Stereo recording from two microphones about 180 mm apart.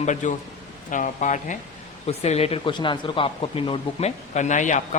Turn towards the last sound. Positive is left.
turn(degrees=45)  # may be behind; listen again after turning